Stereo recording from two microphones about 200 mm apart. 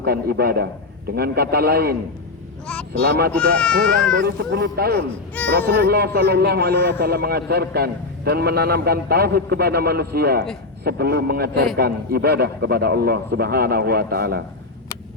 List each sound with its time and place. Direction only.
0.0 s a man's voice: 50° right (ahead or behind)
3.0 s a man's voice: 50° right (ahead or behind)
3.3 s speech: 5° left (ahead or behind)
4.2 s speech: 60° right (ahead or behind)
5.4 s a sound: 10° left (ahead or behind)
5.7 s a man's voice: 50° right (ahead or behind)